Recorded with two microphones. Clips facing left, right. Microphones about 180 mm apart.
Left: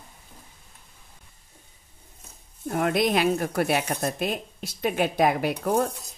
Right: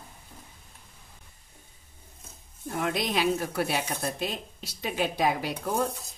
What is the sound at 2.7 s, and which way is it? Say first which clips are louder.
A woman's voice: left 6 dB; 55° left (ahead or behind).